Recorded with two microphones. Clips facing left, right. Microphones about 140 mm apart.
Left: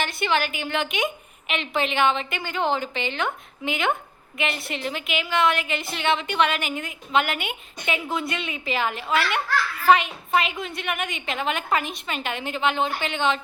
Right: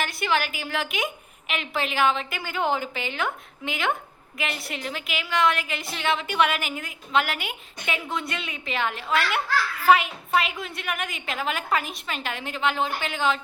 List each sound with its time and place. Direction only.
0.0 s a woman's voice: centre (ahead or behind)